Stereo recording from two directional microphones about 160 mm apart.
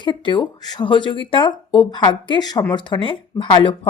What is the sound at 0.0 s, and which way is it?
A woman's voice, 30° left (ahead or behind).